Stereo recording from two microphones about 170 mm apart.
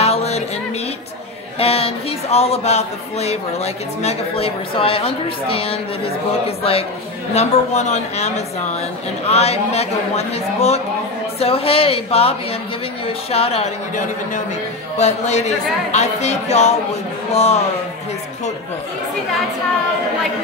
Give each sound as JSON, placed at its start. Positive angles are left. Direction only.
{"t": 0.0, "sound": "music", "side_deg": 40}
{"t": 1.6, "sound": "a woman's voice", "side_deg": 35}